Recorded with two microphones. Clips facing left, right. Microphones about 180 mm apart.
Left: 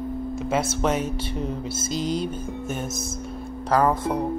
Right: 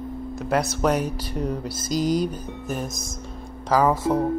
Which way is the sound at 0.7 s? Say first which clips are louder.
Right 1 dB; centre (ahead or behind).